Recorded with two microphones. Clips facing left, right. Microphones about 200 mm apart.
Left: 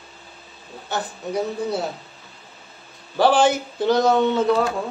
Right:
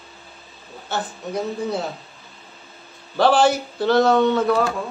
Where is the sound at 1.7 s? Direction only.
Centre (ahead or behind).